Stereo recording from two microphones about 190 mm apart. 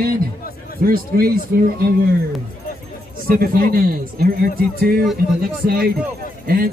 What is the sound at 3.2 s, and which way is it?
A man's voice, 50° right (ahead or behind).